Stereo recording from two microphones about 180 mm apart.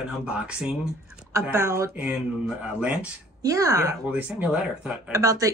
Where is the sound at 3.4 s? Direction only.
20° right (ahead or behind).